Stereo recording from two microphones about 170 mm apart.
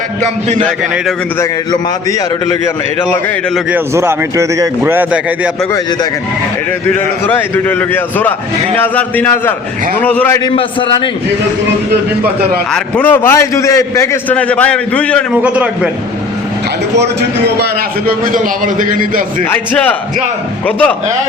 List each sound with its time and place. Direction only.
1.4 s a man's voice: 20° left (ahead or behind)
3.9 s a man's voice: 15° right (ahead or behind)
7.3 s a man's voice: 10° left (ahead or behind)
10.4 s a man's voice: 30° left (ahead or behind)
12.7 s a man's voice: 10° left (ahead or behind)
15.3 s a man's voice: 10° right (ahead or behind)
16.9 s a man's voice: 80° right; by 19.5 s 55° right (ahead or behind)
19.5 s a man's voice: 10° left (ahead or behind)